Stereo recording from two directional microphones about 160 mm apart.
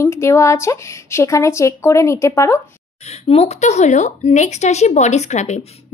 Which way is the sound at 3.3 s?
40° left (ahead or behind).